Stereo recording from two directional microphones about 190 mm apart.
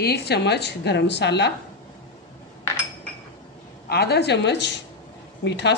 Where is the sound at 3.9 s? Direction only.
60° left (ahead or behind).